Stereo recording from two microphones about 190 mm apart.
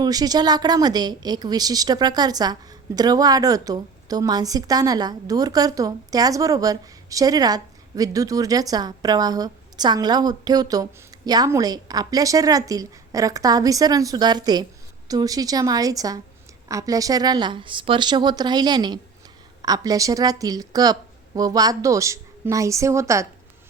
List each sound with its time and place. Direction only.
0.0 s a woman's voice: 20° right (ahead or behind)